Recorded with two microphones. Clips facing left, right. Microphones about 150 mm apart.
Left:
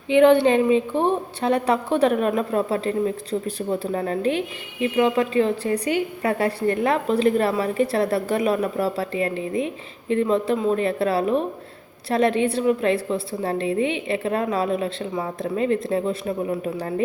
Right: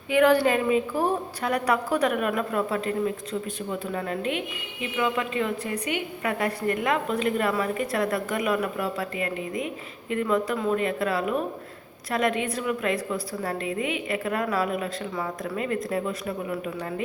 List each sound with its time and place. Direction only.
0.1 s a woman's voice: 25° left (ahead or behind)